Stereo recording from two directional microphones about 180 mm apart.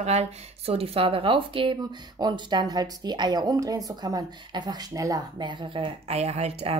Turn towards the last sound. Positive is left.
turn(degrees=-35)  # may be behind; listen again after turning